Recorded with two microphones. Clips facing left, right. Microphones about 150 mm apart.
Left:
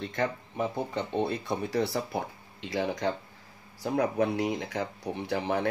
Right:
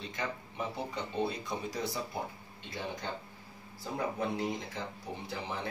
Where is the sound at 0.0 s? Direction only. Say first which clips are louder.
Left 8 dB; 55° left (ahead or behind); by 3.1 s 85° left.